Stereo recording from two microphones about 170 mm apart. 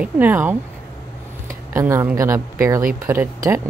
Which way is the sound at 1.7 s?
15° right (ahead or behind).